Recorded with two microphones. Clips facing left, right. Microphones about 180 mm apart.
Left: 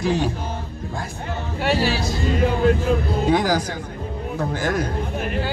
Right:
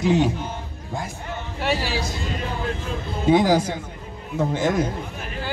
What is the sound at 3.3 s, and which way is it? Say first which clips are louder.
Speech: right 5 dB; 25° right (ahead or behind).